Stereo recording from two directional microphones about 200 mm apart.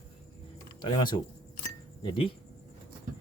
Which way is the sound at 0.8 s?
20° left (ahead or behind).